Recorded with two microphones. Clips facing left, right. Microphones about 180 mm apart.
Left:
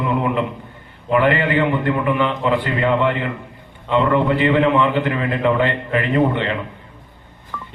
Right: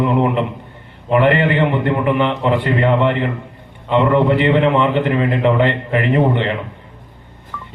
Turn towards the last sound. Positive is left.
turn(degrees=50)  # may be behind; listen again after turning